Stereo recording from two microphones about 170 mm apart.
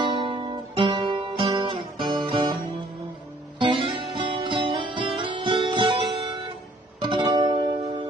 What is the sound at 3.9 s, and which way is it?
Music, 30° right (ahead or behind).